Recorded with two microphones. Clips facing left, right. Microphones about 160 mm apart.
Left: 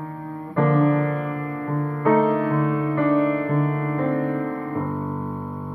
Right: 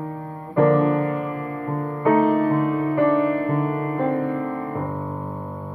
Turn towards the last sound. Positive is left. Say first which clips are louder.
# even
turn(degrees=-20)  # may be behind; listen again after turning